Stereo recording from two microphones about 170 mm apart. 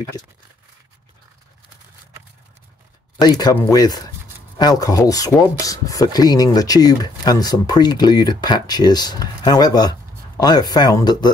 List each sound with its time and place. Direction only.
3.2 s speech: 25° left (ahead or behind)